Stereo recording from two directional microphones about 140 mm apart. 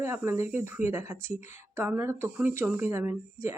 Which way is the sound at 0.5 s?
15° right (ahead or behind).